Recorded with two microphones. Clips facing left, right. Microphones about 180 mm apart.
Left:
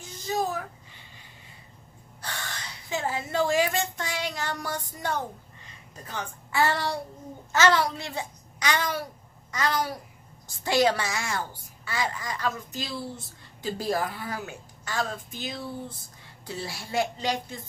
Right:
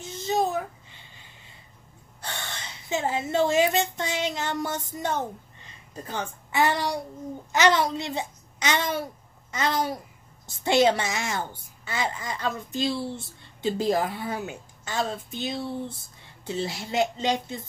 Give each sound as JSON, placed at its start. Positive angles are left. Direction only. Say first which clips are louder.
{"t": 0.0, "sound": "babbling", "louder": "right 3 dB", "side_deg": -25}
{"t": 2.2, "sound": "a woman's voice", "louder": "right 1 dB", "side_deg": -25}
{"t": 6.5, "sound": "child singing", "louder": "right 1 dB", "side_deg": -15}
{"t": 7.5, "sound": "a woman's voice", "louder": "right 1 dB", "side_deg": -20}